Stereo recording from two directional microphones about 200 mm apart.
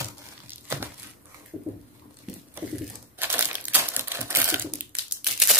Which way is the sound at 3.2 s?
10° right (ahead or behind).